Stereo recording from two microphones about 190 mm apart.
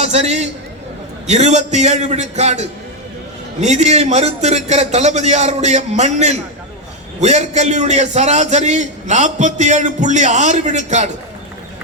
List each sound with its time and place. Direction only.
0.0 s a man's voice: 35° right (ahead or behind)